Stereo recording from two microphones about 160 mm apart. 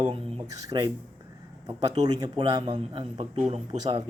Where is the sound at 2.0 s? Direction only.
25° right (ahead or behind).